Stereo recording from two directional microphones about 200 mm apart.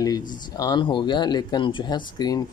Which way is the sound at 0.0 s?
20° left (ahead or behind).